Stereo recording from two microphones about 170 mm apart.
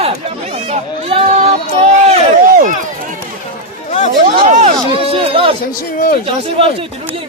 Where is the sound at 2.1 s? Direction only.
50° right (ahead or behind).